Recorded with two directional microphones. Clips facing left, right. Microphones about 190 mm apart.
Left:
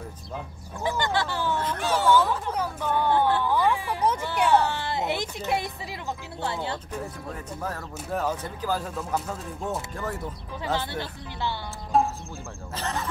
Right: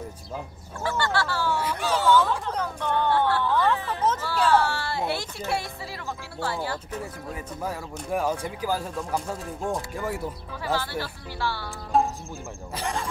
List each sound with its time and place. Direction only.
0.8 s speech: 15° left (ahead or behind)
1.6 s speech: 10° right (ahead or behind)
1.9 s a sound: 5° left (ahead or behind)
2.4 s speech: 10° left (ahead or behind)
7.3 s speech: 10° right (ahead or behind)
10.6 s speech: 20° left (ahead or behind)
11.9 s music: centre (ahead or behind)
12.7 s speech: 10° right (ahead or behind)